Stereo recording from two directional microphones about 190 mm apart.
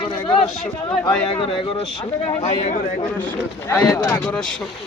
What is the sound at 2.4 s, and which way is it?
Speech, 35° left (ahead or behind).